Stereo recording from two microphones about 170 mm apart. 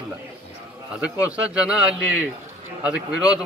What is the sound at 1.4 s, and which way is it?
Speech, 5° right (ahead or behind).